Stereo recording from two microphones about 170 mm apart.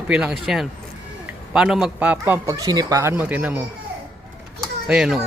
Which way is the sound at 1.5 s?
5° right (ahead or behind).